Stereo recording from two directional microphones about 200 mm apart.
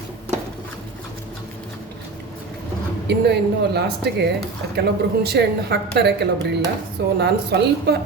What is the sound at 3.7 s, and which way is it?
A woman's voice, 55° right (ahead or behind).